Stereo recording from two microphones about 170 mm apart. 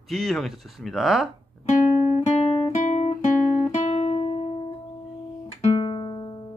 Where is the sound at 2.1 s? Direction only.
35° left (ahead or behind).